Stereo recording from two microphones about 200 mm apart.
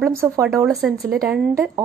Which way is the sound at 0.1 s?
15° right (ahead or behind).